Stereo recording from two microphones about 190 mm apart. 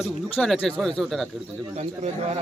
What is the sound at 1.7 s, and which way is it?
Speech, 35° right (ahead or behind).